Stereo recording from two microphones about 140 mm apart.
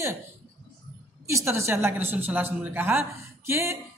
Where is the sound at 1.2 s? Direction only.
20° right (ahead or behind).